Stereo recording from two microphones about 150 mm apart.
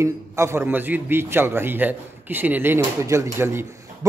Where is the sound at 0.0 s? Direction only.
20° right (ahead or behind).